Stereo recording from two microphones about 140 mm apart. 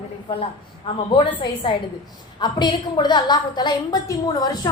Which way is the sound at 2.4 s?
30° left (ahead or behind).